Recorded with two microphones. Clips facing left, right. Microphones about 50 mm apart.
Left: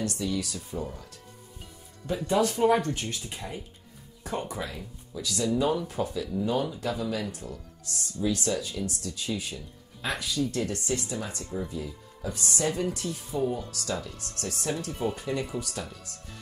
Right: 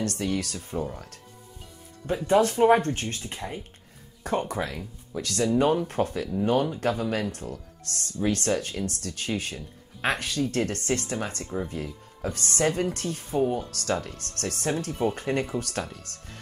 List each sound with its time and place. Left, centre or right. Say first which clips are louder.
0.0 s speech: right 2 dB; right
2.2 s speech: right 4 dB; right
2.8 s speech: right 2 dB; right